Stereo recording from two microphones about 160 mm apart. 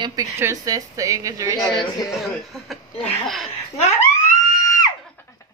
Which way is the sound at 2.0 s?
Centre (ahead or behind).